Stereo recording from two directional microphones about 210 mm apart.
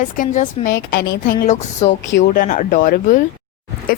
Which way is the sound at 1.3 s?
35° left (ahead or behind).